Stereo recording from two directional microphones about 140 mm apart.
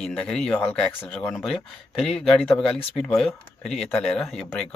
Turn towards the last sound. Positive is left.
turn(degrees=0)  # may be behind; listen again after turning